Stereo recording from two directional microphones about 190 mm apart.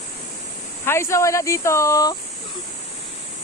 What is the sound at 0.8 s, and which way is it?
Speech, 15° left (ahead or behind).